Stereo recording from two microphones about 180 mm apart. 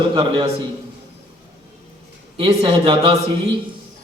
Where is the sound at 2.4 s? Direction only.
25° right (ahead or behind).